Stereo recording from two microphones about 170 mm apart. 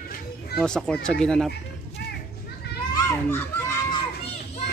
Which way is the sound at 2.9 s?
15° left (ahead or behind).